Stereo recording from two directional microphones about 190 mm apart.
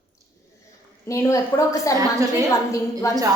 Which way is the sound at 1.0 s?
15° left (ahead or behind).